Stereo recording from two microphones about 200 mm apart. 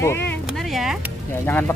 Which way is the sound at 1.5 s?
10° left (ahead or behind).